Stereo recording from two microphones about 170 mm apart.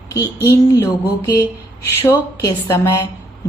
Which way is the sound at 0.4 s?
15° left (ahead or behind).